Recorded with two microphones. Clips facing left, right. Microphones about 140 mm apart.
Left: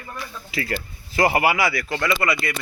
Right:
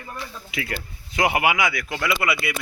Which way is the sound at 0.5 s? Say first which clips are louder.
Left 3 dB; centre (ahead or behind).